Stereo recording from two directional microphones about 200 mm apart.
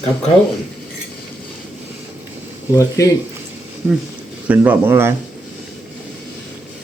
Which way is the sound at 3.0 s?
15° left (ahead or behind).